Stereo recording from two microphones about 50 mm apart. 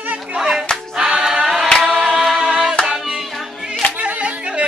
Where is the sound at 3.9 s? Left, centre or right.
Right.